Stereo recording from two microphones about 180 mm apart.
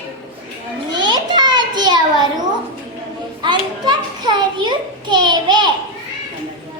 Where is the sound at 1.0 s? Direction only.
25° right (ahead or behind).